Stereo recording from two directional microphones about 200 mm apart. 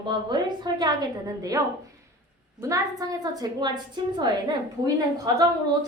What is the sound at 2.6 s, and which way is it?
A woman's voice, 15° right (ahead or behind).